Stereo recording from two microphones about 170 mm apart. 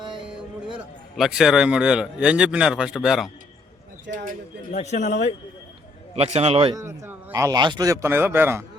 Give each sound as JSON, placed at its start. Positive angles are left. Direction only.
{"t": 1.1, "sound": "a man's voice", "side_deg": 0}
{"t": 4.1, "sound": "speech", "side_deg": -55}
{"t": 4.8, "sound": "a man's voice", "side_deg": 40}
{"t": 6.1, "sound": "a man's voice", "side_deg": -40}
{"t": 6.7, "sound": "speech", "side_deg": -15}